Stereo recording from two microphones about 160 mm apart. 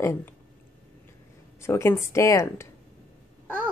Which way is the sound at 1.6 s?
15° left (ahead or behind).